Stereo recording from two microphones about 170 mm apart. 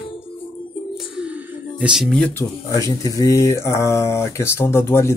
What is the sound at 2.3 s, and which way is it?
Speech, 20° left (ahead or behind).